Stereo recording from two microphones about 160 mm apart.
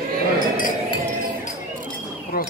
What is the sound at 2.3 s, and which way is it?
Speech, 70° left (ahead or behind).